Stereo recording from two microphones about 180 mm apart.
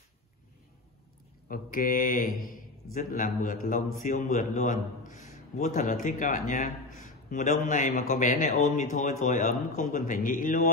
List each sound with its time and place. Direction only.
1.5 s a man's voice: 50° left (ahead or behind)